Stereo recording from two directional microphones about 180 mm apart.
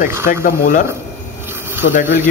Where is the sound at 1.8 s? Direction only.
60° left (ahead or behind).